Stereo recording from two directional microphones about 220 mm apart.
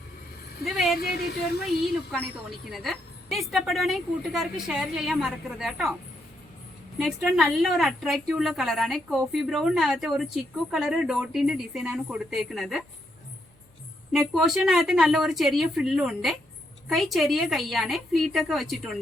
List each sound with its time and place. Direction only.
0.6 s speech: centre (ahead or behind)
0.9 s speech: 45° left (ahead or behind)
2.7 s a woman's voice: centre (ahead or behind)
7.0 s a woman's voice: centre (ahead or behind)
14.1 s a woman's voice: centre (ahead or behind)